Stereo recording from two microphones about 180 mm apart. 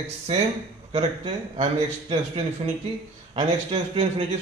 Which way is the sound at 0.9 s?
35° right (ahead or behind).